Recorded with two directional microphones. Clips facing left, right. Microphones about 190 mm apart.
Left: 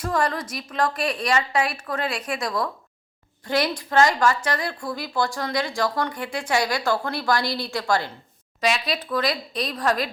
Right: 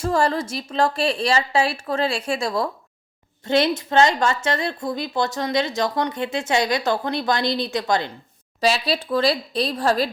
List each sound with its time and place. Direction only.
0.0 s a woman's voice: 30° right (ahead or behind)
8.6 s speech: 30° right (ahead or behind)